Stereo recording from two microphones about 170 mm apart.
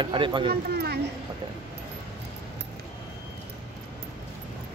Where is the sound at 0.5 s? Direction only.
70° right (ahead or behind).